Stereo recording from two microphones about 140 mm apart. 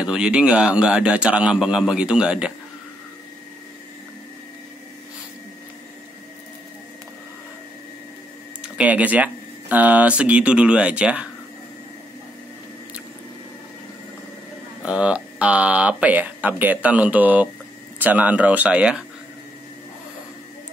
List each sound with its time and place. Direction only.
0.0 s speech: 5° right (ahead or behind)
8.7 s speech: 10° right (ahead or behind)
14.8 s speech: 5° right (ahead or behind)